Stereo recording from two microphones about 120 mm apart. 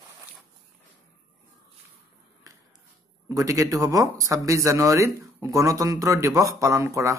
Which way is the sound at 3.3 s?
30° right (ahead or behind).